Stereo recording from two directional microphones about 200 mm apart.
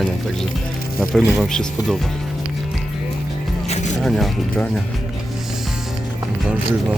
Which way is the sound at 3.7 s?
35° left (ahead or behind).